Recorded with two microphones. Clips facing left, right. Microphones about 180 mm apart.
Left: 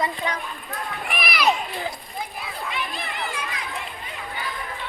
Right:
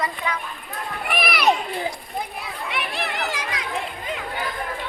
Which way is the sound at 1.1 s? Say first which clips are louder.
Right 3 dB; 65° right (ahead or behind).